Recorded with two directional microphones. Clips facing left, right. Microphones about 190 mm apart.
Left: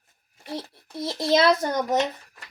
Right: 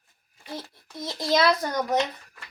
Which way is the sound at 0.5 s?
30° left (ahead or behind).